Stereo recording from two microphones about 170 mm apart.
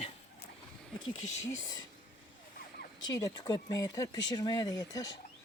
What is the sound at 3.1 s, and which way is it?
Speech, 20° left (ahead or behind).